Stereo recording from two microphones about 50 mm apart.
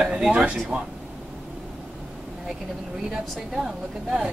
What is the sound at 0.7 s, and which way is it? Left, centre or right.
Speech, right.